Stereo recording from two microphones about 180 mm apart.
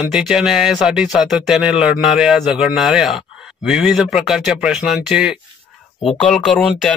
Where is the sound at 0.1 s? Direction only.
5° right (ahead or behind).